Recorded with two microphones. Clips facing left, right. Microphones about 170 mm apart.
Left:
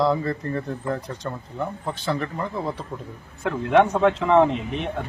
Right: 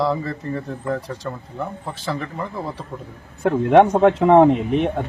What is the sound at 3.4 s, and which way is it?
Speech, 50° right (ahead or behind).